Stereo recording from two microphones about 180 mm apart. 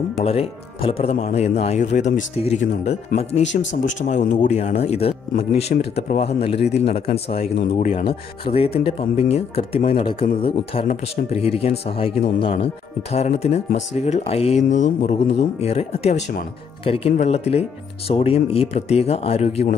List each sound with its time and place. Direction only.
0.2 s speech: 35° left (ahead or behind)